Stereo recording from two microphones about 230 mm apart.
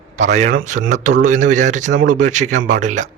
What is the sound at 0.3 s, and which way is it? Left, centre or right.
A man's voice, right.